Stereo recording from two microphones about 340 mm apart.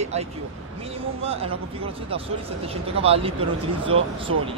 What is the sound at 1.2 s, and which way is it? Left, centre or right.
Speech, centre.